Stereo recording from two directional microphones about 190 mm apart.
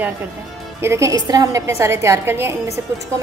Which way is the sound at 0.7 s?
15° right (ahead or behind).